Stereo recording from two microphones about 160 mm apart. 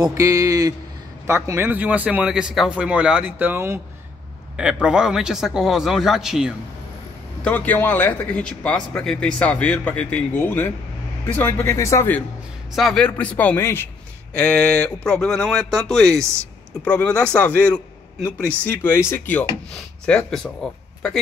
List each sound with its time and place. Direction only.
0.0 s a man's voice: 20° right (ahead or behind)
4.8 s speech: 5° right (ahead or behind)
7.4 s speech: 10° left (ahead or behind)
12.7 s speech: centre (ahead or behind)